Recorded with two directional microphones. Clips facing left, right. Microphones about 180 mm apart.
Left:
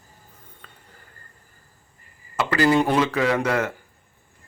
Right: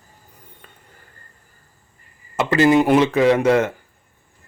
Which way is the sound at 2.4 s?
20° right (ahead or behind).